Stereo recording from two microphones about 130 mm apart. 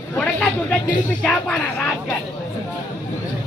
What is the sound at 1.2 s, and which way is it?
Speech, 5° left (ahead or behind).